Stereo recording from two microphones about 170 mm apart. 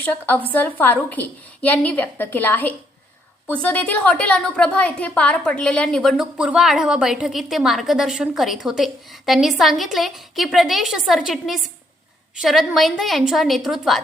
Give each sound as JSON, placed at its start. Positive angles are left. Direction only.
{"t": 0.0, "sound": "a woman's voice", "side_deg": 10}